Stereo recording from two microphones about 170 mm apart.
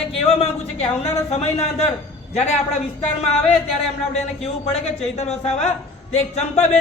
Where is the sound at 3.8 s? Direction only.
35° left (ahead or behind).